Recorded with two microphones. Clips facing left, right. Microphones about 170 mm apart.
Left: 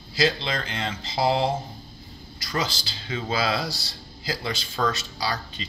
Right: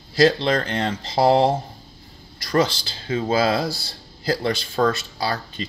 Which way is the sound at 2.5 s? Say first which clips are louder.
Right 9 dB; 55° right (ahead or behind).